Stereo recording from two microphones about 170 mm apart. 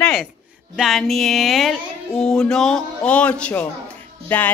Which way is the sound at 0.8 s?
Centre (ahead or behind).